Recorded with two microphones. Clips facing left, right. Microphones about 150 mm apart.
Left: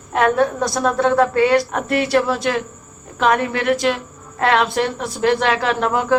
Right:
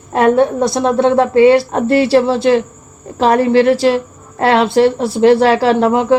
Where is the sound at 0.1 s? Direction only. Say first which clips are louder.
Right 5 dB; 30° right (ahead or behind).